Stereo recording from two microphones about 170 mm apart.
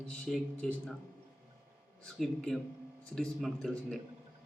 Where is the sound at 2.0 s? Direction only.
Centre (ahead or behind).